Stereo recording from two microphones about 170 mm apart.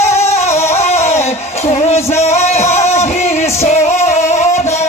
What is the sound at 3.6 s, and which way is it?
Music, 40° left (ahead or behind).